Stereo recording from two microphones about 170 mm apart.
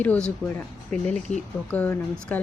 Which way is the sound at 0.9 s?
45° right (ahead or behind).